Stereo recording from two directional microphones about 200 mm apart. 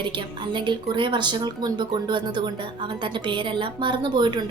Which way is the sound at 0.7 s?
25° right (ahead or behind).